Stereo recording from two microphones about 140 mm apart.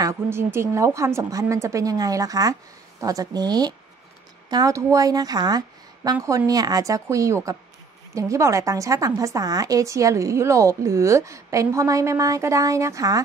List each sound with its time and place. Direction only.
0.0 s a woman's voice: 20° right (ahead or behind)